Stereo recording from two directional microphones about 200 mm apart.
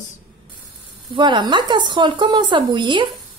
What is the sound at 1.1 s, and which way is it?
Speech, 25° right (ahead or behind).